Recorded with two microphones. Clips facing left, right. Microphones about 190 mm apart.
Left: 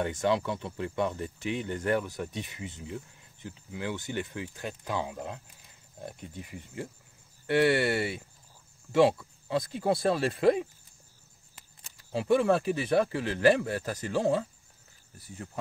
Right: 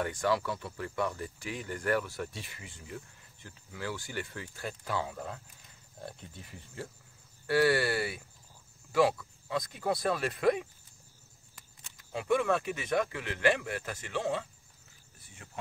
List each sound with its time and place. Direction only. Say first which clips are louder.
0.0 s speech: left 3 dB; 20° left (ahead or behind)
11.8 s speech: left 5 dB; 30° left (ahead or behind)